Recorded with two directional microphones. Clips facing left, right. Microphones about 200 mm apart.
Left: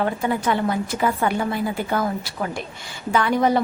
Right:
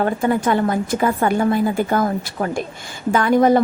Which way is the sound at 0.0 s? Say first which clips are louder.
Right 4 dB; 45° right (ahead or behind).